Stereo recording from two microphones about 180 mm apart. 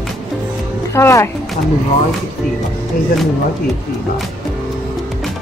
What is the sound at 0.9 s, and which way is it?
Speech, 15° left (ahead or behind).